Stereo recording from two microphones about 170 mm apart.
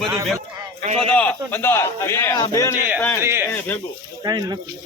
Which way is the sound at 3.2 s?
15° right (ahead or behind).